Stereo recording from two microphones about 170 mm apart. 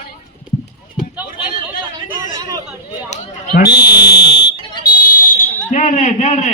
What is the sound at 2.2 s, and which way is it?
Chatter, 20° right (ahead or behind).